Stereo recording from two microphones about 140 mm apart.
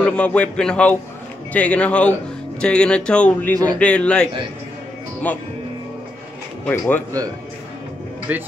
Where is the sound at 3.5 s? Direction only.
30° right (ahead or behind).